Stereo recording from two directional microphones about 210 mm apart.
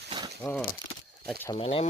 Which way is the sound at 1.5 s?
25° left (ahead or behind).